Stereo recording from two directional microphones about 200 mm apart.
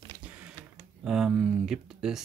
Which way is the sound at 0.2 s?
5° right (ahead or behind).